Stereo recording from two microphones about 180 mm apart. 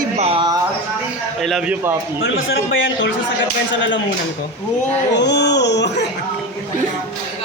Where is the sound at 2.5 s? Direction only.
90° left.